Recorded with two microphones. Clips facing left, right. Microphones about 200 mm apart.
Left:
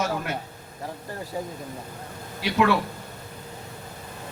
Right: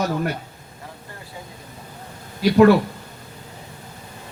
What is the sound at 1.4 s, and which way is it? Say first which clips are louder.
Speech: left 9 dB; 40° left (ahead or behind).